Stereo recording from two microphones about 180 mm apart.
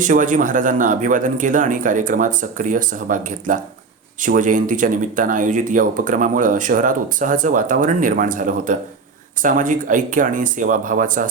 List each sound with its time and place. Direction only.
0.0 s speech: 45° right (ahead or behind)